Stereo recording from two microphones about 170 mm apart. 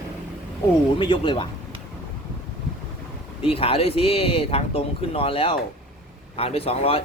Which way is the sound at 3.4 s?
35° left (ahead or behind).